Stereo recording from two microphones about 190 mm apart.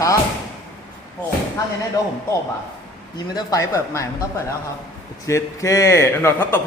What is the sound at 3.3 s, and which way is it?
Speech, 15° left (ahead or behind).